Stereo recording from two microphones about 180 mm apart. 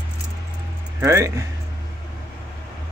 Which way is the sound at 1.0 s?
15° right (ahead or behind).